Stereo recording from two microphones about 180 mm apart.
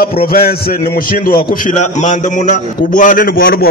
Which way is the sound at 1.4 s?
40° left (ahead or behind).